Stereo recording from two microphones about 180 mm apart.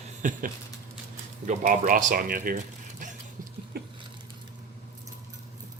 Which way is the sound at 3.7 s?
60° right (ahead or behind).